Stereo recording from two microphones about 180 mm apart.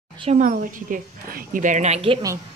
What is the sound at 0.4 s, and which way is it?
A woman's voice, 50° right (ahead or behind).